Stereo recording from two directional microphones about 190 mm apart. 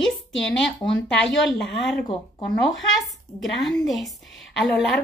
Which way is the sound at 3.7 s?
20° left (ahead or behind).